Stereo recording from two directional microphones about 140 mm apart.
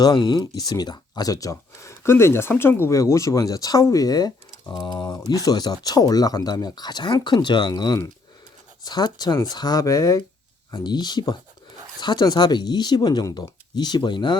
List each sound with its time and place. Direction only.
0.0 s speech: 30° left (ahead or behind)